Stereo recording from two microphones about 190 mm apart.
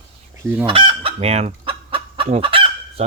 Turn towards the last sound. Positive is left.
turn(degrees=-30)  # may be behind; listen again after turning